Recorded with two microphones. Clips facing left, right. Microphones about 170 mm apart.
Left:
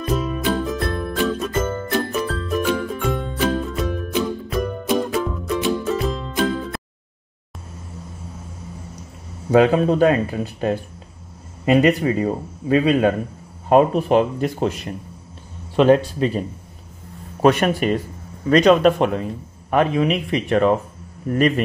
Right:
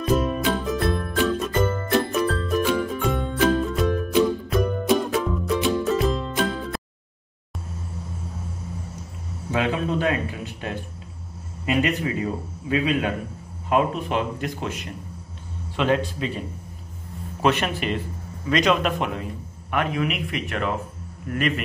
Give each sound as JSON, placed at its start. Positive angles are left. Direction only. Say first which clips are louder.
{"t": 0.0, "sound": "music", "louder": "right 1 dB", "side_deg": 0}
{"t": 9.5, "sound": "a man's voice", "louder": "left 9 dB", "side_deg": 40}